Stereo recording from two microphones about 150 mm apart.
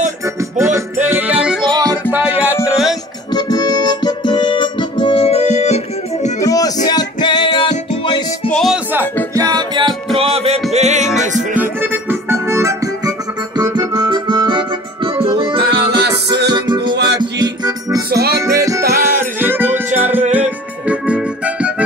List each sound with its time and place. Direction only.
0.6 s music: 20° right (ahead or behind); by 3.0 s 5° right (ahead or behind)
3.3 s music: 25° left (ahead or behind); by 5.8 s 50° left (ahead or behind)
6.4 s music: 25° left (ahead or behind)
8.5 s music: 5° left (ahead or behind)
9.3 s music: 25° right (ahead or behind); by 11.1 s 50° right (ahead or behind)
11.5 s music: 10° right (ahead or behind)